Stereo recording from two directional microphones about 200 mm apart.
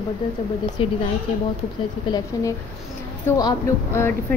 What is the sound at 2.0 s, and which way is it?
A woman's voice, 20° left (ahead or behind).